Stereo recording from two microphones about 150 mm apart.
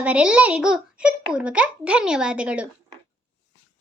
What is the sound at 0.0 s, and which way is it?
Speech, 5° right (ahead or behind).